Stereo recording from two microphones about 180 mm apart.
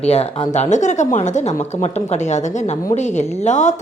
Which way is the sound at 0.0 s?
35° left (ahead or behind).